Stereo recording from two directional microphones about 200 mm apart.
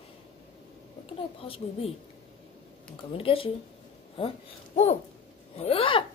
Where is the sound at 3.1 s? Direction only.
25° left (ahead or behind).